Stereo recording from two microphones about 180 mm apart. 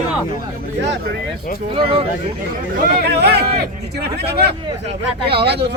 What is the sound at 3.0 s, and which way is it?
A man's voice, 65° right (ahead or behind).